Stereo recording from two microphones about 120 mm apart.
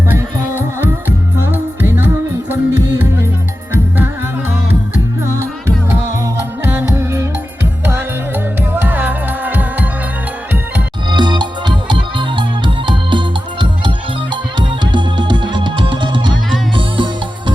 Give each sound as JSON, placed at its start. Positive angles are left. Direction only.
{"t": 0.8, "sound": "music", "side_deg": -15}
{"t": 5.2, "sound": "music", "side_deg": -25}
{"t": 11.1, "sound": "music", "side_deg": -40}